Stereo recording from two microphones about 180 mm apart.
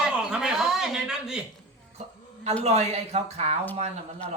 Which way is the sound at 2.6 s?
35° right (ahead or behind).